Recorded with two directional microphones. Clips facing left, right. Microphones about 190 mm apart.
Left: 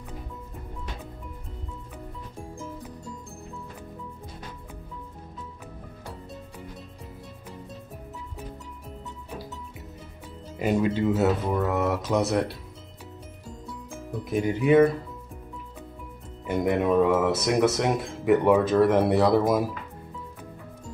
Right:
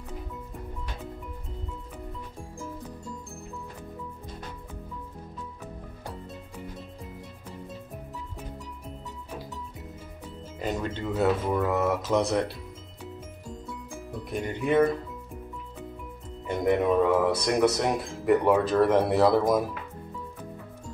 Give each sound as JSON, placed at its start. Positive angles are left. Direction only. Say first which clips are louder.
{"t": 10.6, "sound": "speech", "louder": "left 7 dB", "side_deg": 10}
{"t": 14.3, "sound": "speech", "louder": "left 5 dB", "side_deg": 0}
{"t": 16.4, "sound": "speech", "louder": "even", "side_deg": 0}